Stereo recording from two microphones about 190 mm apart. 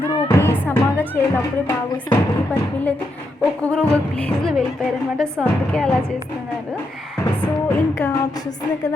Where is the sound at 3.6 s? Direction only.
5° left (ahead or behind).